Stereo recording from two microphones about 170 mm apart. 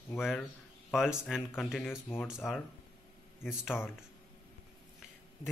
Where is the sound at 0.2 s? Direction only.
Centre (ahead or behind).